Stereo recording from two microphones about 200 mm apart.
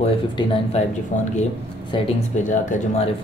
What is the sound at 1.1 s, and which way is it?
Speech, 40° left (ahead or behind).